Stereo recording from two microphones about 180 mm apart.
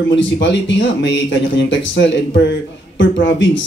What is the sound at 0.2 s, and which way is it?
A man's voice, 85° left.